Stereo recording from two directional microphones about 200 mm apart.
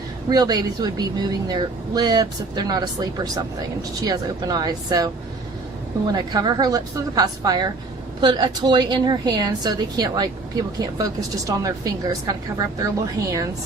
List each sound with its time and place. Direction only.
0.3 s speech: 20° right (ahead or behind)
6.1 s a woman's voice: 20° right (ahead or behind)